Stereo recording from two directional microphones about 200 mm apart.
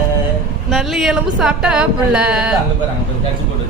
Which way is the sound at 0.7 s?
Centre (ahead or behind).